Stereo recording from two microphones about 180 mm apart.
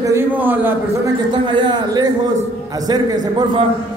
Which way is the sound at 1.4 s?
25° right (ahead or behind).